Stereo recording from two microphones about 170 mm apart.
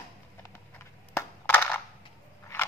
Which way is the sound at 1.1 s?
15° left (ahead or behind).